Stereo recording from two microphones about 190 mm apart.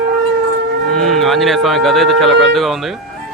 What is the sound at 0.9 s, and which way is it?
Speech, centre (ahead or behind).